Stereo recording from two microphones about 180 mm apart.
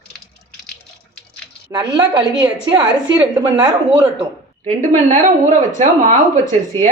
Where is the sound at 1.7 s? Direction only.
25° right (ahead or behind).